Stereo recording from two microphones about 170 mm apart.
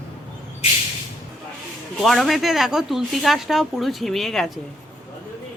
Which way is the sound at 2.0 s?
Centre (ahead or behind).